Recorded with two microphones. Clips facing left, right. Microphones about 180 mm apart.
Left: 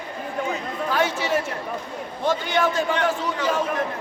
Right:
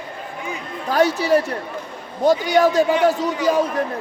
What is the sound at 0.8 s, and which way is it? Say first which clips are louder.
A man's voice: right 6 dB; 40° right (ahead or behind).